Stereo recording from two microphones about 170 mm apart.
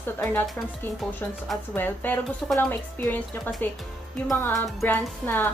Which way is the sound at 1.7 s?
10° left (ahead or behind).